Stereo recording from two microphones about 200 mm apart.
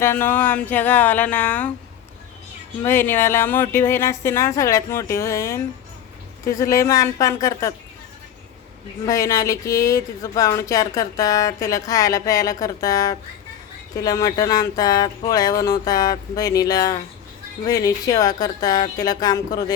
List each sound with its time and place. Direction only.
0.0 s speech: 10° left (ahead or behind)
2.8 s speech: 10° left (ahead or behind)
9.0 s speech: 15° left (ahead or behind)